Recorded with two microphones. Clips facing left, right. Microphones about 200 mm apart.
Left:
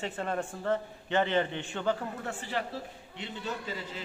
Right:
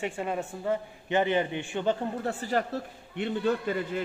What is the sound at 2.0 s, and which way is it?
Speech, 35° right (ahead or behind).